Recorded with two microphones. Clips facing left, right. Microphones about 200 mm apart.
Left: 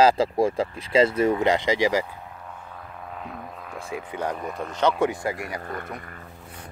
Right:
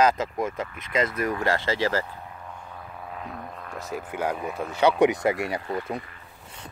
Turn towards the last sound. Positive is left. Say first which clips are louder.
# right 4 dB
turn(degrees=50)  # may be behind; listen again after turning